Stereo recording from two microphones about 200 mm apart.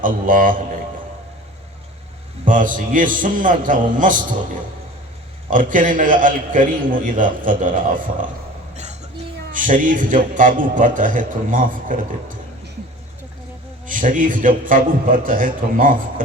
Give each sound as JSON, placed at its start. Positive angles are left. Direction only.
{"t": 0.0, "sound": "a man's voice", "side_deg": -45}
{"t": 2.4, "sound": "a man's voice", "side_deg": -40}
{"t": 5.5, "sound": "a man's voice", "side_deg": -40}
{"t": 8.7, "sound": "a sound", "side_deg": -35}
{"t": 9.5, "sound": "a man's voice", "side_deg": -40}
{"t": 13.8, "sound": "a man's voice", "side_deg": -40}